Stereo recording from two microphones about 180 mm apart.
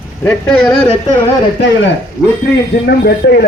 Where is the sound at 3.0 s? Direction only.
60° left (ahead or behind).